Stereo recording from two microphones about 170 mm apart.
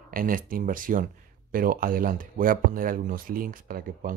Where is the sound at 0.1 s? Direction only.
55° right (ahead or behind).